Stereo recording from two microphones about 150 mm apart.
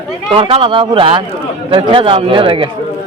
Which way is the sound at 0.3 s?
35° right (ahead or behind).